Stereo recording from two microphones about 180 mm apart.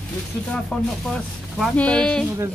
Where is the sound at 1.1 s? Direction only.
Centre (ahead or behind).